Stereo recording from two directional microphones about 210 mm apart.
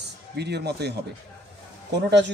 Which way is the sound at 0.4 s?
50° right (ahead or behind).